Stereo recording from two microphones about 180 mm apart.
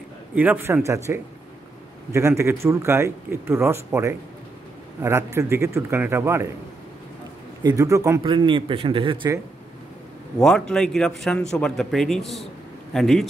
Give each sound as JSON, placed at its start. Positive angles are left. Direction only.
{"t": 0.3, "sound": "speech", "side_deg": -10}
{"t": 7.6, "sound": "a man's voice", "side_deg": -20}
{"t": 10.4, "sound": "speech", "side_deg": 5}